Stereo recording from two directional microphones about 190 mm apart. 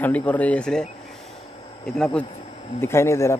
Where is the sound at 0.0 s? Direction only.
10° left (ahead or behind).